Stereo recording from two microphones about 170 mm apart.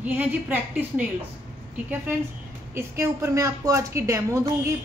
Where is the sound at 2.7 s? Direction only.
15° right (ahead or behind).